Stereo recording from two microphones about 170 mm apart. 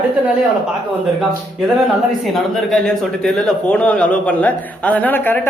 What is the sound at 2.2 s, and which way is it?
Speech, centre (ahead or behind).